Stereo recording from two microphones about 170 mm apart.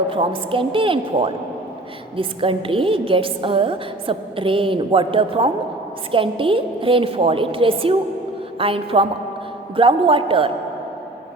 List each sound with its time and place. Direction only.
0.1 s a woman's voice: 30° right (ahead or behind)